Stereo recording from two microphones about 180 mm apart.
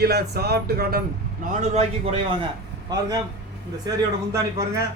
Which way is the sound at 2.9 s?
20° right (ahead or behind).